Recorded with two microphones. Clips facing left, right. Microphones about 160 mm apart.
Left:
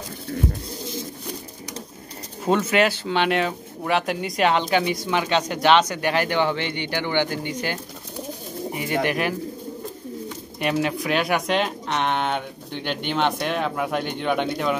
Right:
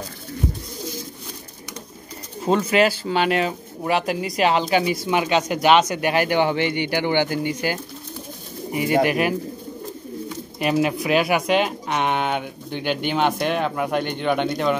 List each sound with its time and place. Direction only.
2.4 s speech: centre (ahead or behind)
10.6 s speech: 10° right (ahead or behind)